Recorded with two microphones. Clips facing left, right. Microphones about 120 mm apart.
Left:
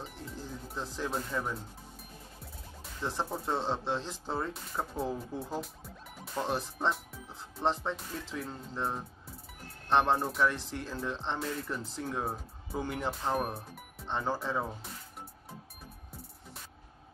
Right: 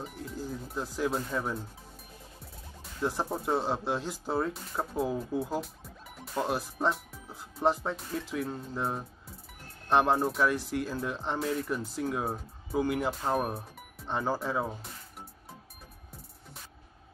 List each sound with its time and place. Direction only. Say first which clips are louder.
0.0 s speech: right 4 dB; 10° right (ahead or behind)
3.0 s speech: right 4 dB; 10° right (ahead or behind)